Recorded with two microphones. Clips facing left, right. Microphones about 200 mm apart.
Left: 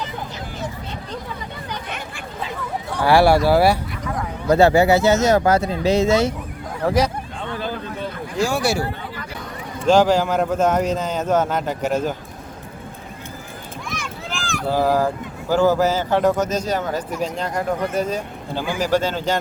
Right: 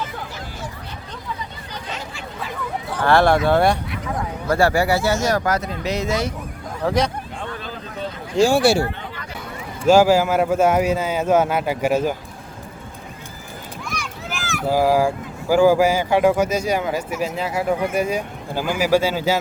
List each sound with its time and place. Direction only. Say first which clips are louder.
3.0 s speech: left 1 dB; 10° left (ahead or behind)
4.4 s speech: left 4 dB; 20° left (ahead or behind)
6.8 s speech: left 1 dB; 5° left (ahead or behind)
8.4 s speech: right 5 dB; 30° right (ahead or behind)
9.8 s speech: right 2 dB; 10° right (ahead or behind)
14.7 s speech: right 2 dB; 10° right (ahead or behind)